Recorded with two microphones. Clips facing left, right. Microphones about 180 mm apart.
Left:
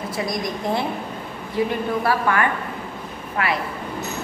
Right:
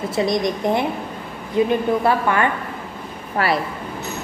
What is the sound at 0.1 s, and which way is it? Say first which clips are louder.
A woman's voice: right 7 dB; 25° right (ahead or behind).